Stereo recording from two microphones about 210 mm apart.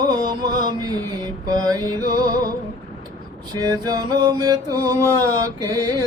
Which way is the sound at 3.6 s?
20° right (ahead or behind).